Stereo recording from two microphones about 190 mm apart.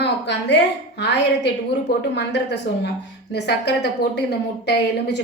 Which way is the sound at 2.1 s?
65° left (ahead or behind).